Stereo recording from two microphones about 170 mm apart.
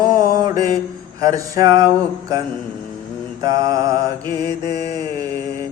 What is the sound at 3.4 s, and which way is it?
Mantra, 20° right (ahead or behind).